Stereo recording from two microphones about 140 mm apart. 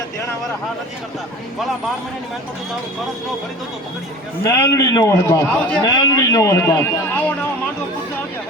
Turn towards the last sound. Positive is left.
turn(degrees=20)  # may be behind; listen again after turning